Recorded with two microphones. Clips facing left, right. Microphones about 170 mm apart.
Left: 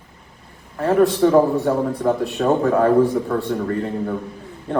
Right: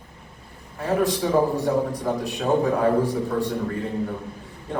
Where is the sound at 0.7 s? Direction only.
60° left (ahead or behind).